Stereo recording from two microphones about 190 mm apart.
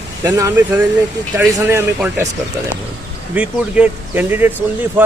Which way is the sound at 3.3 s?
5° right (ahead or behind).